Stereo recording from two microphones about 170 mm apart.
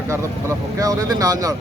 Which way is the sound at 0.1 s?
20° right (ahead or behind).